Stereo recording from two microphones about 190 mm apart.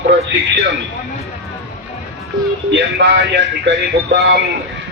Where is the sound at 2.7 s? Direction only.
65° right (ahead or behind).